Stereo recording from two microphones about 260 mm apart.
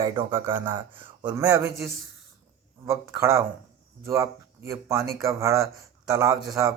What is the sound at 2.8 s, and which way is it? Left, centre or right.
Speech, centre.